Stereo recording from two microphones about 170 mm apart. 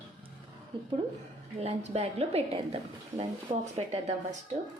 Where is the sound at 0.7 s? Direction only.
30° right (ahead or behind).